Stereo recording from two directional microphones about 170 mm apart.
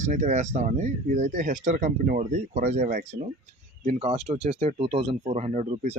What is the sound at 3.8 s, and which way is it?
Speech, 35° right (ahead or behind).